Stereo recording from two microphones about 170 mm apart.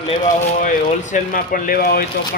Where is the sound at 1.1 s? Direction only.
55° left (ahead or behind).